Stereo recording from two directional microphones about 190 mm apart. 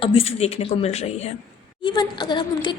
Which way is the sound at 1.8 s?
25° left (ahead or behind).